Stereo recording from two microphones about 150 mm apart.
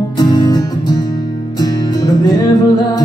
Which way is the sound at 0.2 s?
25° left (ahead or behind).